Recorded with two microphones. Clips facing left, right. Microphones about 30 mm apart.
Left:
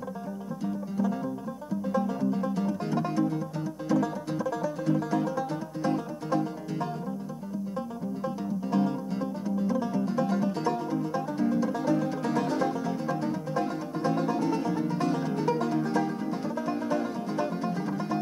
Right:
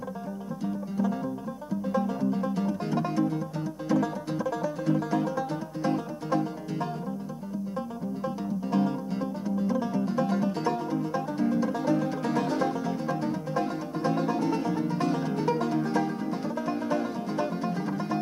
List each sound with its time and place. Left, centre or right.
0.7 s music: centre
8.2 s music: centre